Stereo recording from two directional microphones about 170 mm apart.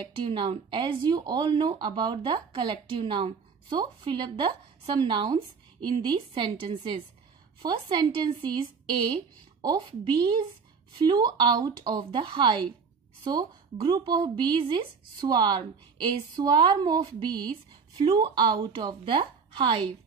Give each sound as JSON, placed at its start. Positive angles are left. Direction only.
{"t": 0.0, "sound": "speech", "side_deg": -30}